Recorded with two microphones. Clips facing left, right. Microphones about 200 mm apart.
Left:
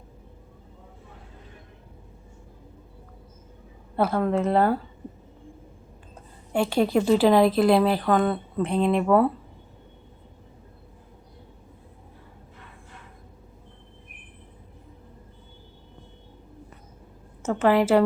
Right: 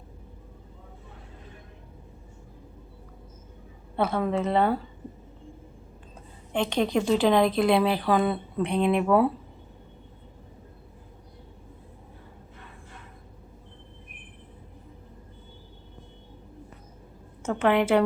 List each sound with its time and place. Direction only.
3.9 s a woman's voice: 5° left (ahead or behind)
6.5 s a woman's voice: 10° left (ahead or behind)
17.4 s a woman's voice: 5° left (ahead or behind)